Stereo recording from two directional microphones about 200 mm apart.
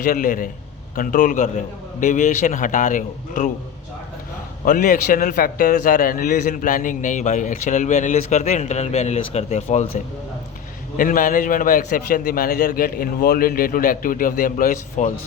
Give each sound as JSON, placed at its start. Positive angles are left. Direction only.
{"t": 0.0, "sound": "a man's voice", "side_deg": 45}
{"t": 4.6, "sound": "a man's voice", "side_deg": 45}
{"t": 10.9, "sound": "a man's voice", "side_deg": 45}